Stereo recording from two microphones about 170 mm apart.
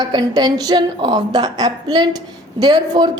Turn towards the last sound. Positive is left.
turn(degrees=-25)  # may be behind; listen again after turning